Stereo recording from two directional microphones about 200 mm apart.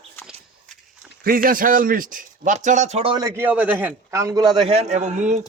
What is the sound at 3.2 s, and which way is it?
A man's voice, 10° right (ahead or behind).